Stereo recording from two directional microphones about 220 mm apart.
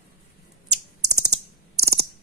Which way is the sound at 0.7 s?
85° right.